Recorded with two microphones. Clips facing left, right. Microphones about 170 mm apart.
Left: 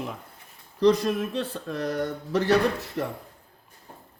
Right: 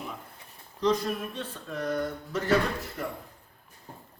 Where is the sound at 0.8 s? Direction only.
75° left (ahead or behind).